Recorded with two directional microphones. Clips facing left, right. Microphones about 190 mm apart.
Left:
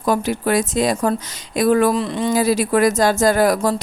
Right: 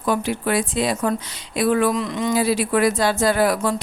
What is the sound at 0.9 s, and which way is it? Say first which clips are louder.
Speech: left 3 dB; 30° left (ahead or behind).